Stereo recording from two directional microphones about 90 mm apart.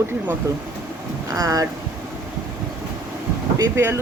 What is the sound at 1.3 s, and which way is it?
Speech, 40° right (ahead or behind).